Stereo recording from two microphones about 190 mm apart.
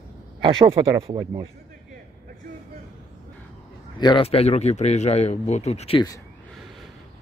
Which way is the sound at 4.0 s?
25° left (ahead or behind).